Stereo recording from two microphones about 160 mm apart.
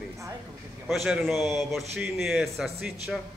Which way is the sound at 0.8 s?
Centre (ahead or behind).